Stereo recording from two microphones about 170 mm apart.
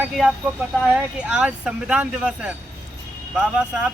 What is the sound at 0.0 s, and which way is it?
Speech, 5° right (ahead or behind).